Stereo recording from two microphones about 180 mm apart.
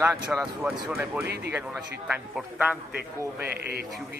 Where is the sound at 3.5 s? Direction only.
60° right (ahead or behind).